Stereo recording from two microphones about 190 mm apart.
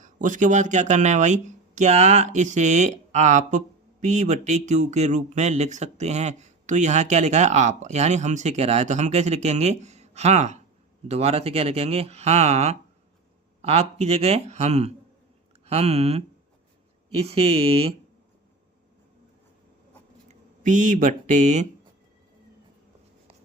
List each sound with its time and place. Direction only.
0.0 s speech: 40° right (ahead or behind)
20.2 s speech: 40° right (ahead or behind)